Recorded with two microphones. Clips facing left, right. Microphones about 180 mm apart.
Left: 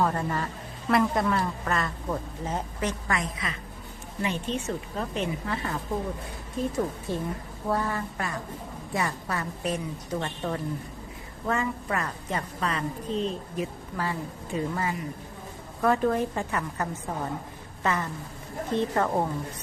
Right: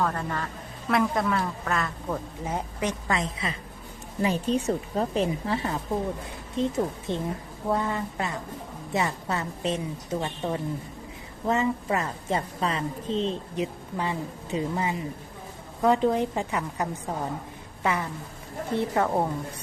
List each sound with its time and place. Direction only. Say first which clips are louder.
0.0 s speech: left 2 dB; 10° left (ahead or behind)
2.4 s a woman's voice: right 1 dB; 10° right (ahead or behind)